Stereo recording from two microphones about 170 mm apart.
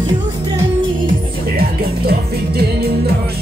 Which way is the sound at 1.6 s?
65° right (ahead or behind).